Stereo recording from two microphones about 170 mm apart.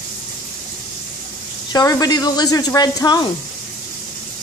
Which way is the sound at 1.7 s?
20° left (ahead or behind).